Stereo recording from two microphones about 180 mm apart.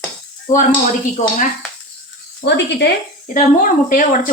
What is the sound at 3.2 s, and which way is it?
Speech, 50° left (ahead or behind).